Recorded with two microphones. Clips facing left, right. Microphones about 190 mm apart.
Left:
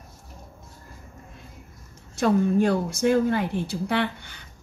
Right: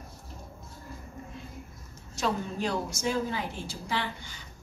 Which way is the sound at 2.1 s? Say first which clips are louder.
Left 10 dB; 55° left (ahead or behind).